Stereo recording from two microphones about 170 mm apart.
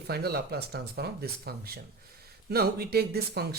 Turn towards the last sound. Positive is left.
turn(degrees=-70)  # may be behind; listen again after turning